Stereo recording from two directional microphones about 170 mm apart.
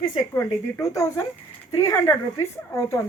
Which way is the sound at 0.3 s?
15° left (ahead or behind).